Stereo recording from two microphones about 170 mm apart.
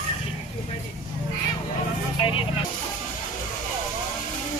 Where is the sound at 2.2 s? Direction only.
30° left (ahead or behind).